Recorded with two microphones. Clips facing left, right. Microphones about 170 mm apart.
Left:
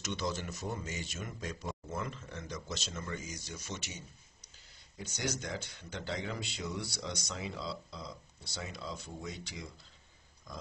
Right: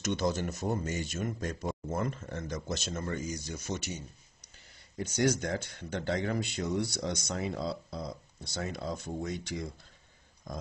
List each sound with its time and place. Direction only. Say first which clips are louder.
0.0 s speech: right 6 dB; 50° right (ahead or behind)